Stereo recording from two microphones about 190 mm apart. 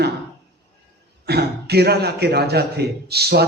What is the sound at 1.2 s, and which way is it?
A man's voice, 55° right (ahead or behind).